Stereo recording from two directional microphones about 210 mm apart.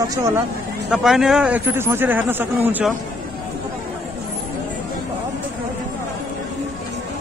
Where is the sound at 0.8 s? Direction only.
Centre (ahead or behind).